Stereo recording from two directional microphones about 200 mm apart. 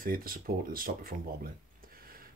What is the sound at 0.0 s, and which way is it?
Speech, 45° right (ahead or behind).